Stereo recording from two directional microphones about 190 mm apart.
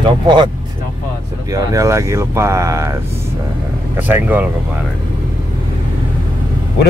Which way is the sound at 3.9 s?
10° right (ahead or behind).